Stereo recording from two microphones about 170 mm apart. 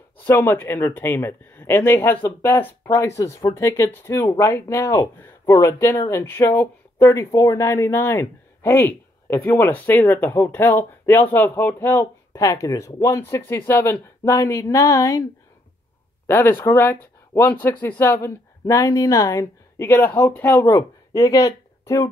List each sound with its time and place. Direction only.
0.2 s speech: 10° left (ahead or behind)
16.3 s speech: 15° left (ahead or behind)